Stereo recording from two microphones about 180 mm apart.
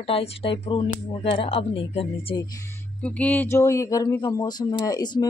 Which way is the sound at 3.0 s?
5° left (ahead or behind).